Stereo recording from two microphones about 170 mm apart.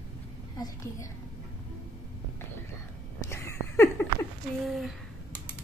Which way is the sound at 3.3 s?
15° left (ahead or behind).